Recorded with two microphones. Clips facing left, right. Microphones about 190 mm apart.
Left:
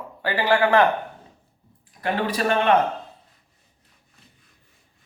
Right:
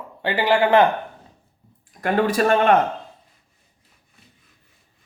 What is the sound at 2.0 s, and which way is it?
Speech, 45° right (ahead or behind).